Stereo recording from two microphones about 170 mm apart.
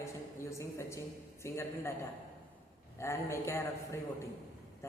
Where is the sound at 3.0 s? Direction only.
15° left (ahead or behind).